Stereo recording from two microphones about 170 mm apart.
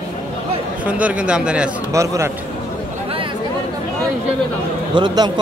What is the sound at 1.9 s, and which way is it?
Speech, 20° right (ahead or behind).